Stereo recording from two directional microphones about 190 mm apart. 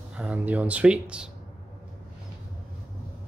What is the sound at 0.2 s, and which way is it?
Speech, 10° right (ahead or behind).